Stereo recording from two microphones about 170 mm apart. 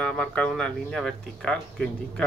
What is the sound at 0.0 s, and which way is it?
Speech, 10° left (ahead or behind).